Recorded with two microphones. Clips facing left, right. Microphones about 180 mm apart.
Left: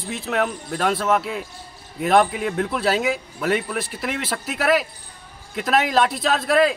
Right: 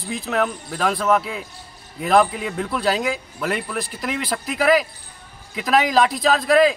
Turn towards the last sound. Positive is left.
turn(degrees=0)  # may be behind; listen again after turning